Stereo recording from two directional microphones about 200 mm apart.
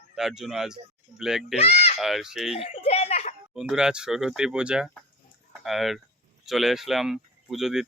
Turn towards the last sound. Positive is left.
turn(degrees=0)  # may be behind; listen again after turning